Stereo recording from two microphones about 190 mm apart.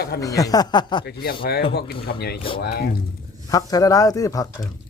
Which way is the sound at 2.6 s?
55° left (ahead or behind).